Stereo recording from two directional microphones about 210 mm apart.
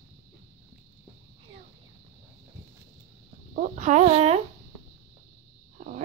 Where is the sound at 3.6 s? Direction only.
35° right (ahead or behind).